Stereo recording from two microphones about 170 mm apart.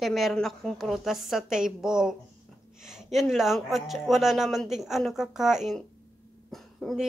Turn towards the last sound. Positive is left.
turn(degrees=0)  # may be behind; listen again after turning